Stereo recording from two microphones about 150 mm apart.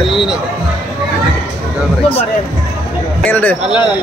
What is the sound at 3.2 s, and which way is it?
Speech, 10° left (ahead or behind).